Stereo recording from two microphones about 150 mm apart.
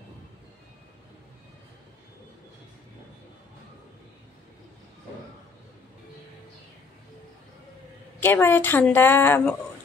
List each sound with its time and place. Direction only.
8.2 s a woman's voice: 15° left (ahead or behind)